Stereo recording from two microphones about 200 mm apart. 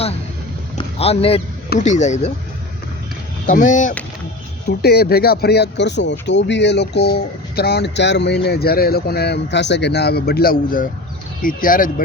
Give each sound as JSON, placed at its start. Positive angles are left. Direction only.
{"t": 0.8, "sound": "vehicle", "side_deg": 30}
{"t": 1.8, "sound": "speech", "side_deg": 35}
{"t": 3.4, "sound": "speech", "side_deg": 40}
{"t": 4.6, "sound": "speech", "side_deg": 50}